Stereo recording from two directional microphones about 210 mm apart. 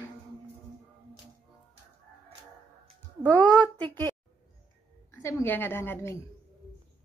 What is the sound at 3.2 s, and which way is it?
Speech, 5° left (ahead or behind).